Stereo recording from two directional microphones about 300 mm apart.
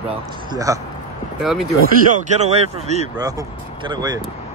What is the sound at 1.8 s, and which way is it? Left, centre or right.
Speech, right.